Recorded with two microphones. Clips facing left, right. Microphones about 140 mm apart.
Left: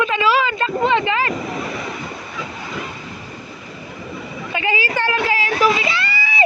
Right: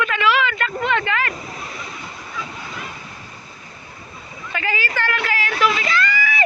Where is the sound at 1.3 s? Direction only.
85° left.